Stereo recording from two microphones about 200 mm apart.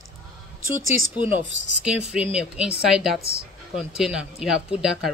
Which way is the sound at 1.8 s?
5° right (ahead or behind).